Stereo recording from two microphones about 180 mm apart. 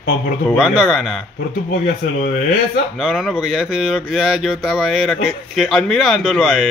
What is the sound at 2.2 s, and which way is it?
Speech, 45° left (ahead or behind).